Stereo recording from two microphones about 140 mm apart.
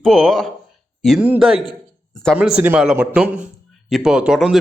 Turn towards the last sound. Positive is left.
turn(degrees=-5)  # may be behind; listen again after turning